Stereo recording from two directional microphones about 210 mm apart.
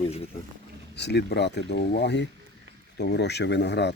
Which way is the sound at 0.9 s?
55° left (ahead or behind).